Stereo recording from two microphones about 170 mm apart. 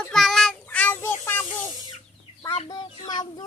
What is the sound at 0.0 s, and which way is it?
Child singing, centre (ahead or behind).